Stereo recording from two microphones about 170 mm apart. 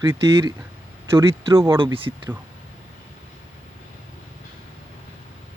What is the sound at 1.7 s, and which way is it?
Speech, 30° right (ahead or behind).